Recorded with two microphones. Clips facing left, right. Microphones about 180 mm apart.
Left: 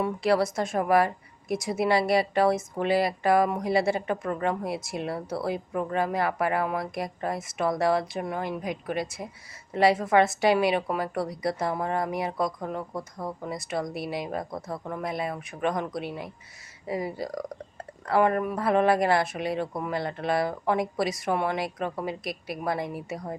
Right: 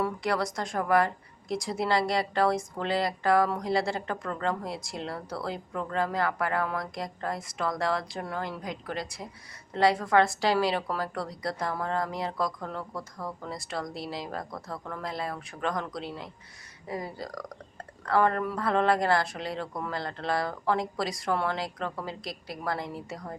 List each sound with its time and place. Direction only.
0.0 s speech: 25° left (ahead or behind)